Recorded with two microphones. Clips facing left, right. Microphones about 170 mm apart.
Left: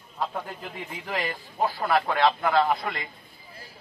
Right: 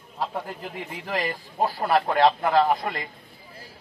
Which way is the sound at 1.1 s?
40° right (ahead or behind).